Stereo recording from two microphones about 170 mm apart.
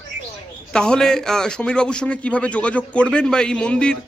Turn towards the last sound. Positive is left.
turn(degrees=5)  # may be behind; listen again after turning